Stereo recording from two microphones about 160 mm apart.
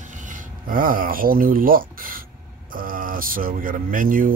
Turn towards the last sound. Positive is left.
turn(degrees=-60)  # may be behind; listen again after turning